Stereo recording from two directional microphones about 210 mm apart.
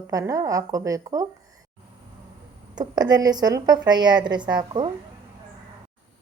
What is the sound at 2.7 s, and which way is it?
A woman's voice, 20° right (ahead or behind).